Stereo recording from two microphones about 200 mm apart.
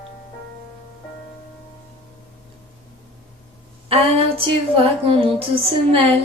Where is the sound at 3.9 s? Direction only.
30° right (ahead or behind).